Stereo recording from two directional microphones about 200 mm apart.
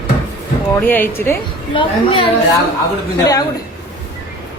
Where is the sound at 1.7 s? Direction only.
25° left (ahead or behind).